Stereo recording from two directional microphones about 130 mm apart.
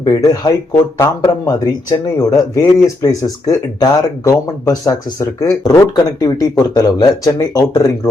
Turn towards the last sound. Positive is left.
turn(degrees=30)  # may be behind; listen again after turning